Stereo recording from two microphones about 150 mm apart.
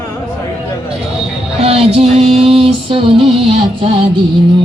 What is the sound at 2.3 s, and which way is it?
Music, 40° right (ahead or behind).